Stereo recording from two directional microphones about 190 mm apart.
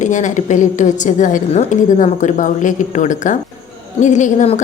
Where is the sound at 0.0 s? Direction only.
40° left (ahead or behind).